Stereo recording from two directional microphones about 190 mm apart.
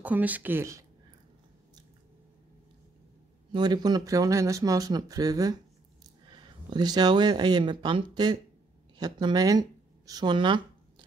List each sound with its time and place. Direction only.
0.0 s speech: 10° right (ahead or behind)
3.5 s speech: 20° right (ahead or behind)